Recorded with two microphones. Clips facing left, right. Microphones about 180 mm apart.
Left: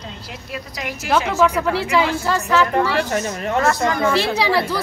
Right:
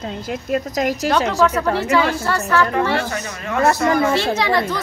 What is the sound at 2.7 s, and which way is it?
Speech, 35° left (ahead or behind).